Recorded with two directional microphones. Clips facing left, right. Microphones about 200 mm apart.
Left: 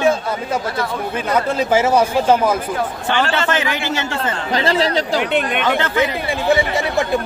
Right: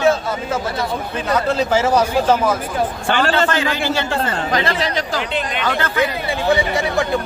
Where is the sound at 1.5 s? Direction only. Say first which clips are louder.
Left 3 dB; 10° left (ahead or behind).